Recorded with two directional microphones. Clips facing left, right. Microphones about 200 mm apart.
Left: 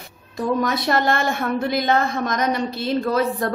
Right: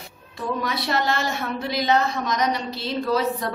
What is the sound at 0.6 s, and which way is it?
A woman's voice, 50° left (ahead or behind).